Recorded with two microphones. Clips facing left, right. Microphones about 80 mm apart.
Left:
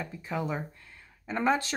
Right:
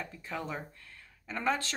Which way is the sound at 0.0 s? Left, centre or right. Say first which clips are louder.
Left 5 dB; centre.